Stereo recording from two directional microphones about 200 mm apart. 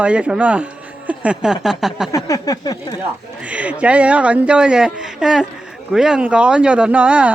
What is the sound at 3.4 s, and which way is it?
Speech, 5° right (ahead or behind).